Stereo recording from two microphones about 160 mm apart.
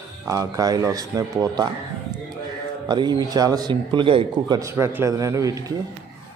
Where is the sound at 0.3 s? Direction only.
20° right (ahead or behind).